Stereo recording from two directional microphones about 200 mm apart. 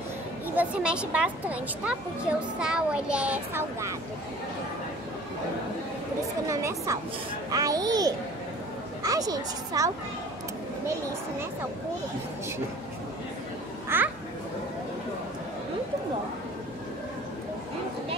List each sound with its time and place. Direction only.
0.6 s speech: 5° right (ahead or behind)
6.5 s a woman's voice: 15° right (ahead or behind)
13.8 s children playing: 10° right (ahead or behind)